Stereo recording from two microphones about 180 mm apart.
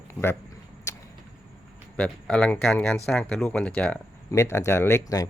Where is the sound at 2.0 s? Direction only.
5° left (ahead or behind).